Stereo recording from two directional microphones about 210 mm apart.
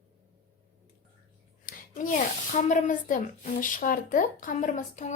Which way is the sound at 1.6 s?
40° left (ahead or behind).